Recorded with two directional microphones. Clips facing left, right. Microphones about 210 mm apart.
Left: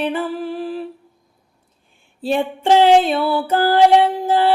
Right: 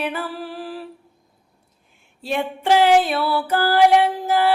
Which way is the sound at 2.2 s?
30° left (ahead or behind).